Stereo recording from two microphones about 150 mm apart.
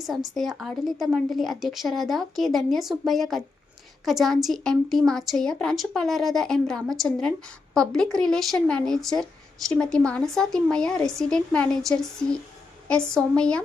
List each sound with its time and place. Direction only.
0.0 s a woman's voice: centre (ahead or behind)